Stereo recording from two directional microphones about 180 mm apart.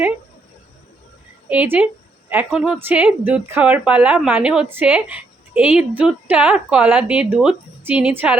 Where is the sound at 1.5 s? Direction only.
10° right (ahead or behind).